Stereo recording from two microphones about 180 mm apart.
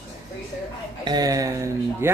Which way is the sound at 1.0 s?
20° right (ahead or behind).